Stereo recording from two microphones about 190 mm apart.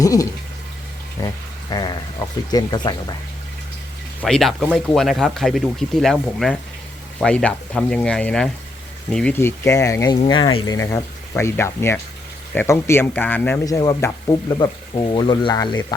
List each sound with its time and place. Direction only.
0.0 s speech: 20° left (ahead or behind)
4.2 s speech: centre (ahead or behind); by 15.8 s 25° left (ahead or behind)